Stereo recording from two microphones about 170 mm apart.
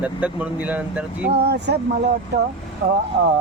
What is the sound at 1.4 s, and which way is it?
Speech, 80° right.